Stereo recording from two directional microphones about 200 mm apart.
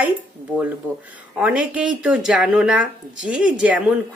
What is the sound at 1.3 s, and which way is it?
Speech, 5° right (ahead or behind).